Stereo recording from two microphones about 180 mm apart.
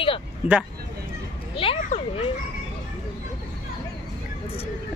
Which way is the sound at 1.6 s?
30° left (ahead or behind).